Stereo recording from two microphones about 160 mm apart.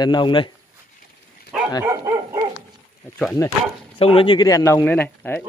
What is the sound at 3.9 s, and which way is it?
A man's voice, 35° left (ahead or behind).